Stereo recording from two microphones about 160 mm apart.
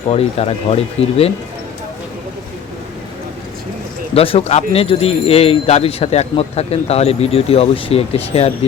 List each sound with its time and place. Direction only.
0.1 s speech: 40° left (ahead or behind)
4.1 s speech: 35° left (ahead or behind)